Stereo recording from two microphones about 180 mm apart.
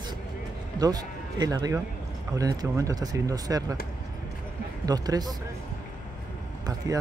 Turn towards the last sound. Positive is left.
turn(degrees=-20)  # may be behind; listen again after turning